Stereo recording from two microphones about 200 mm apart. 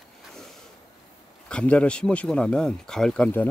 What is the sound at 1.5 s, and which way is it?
Speech, 5° left (ahead or behind).